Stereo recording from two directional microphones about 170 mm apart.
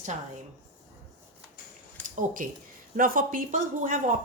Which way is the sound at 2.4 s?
55° right (ahead or behind).